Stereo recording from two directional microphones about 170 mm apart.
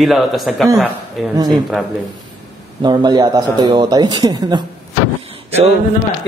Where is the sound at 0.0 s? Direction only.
Centre (ahead or behind).